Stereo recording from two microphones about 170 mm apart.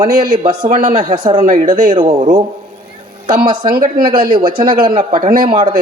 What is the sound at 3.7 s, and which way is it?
Speech, 60° right (ahead or behind).